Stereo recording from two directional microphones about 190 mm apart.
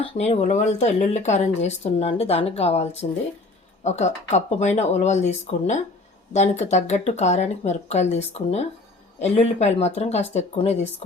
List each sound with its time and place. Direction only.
0.0 s speech: 35° left (ahead or behind)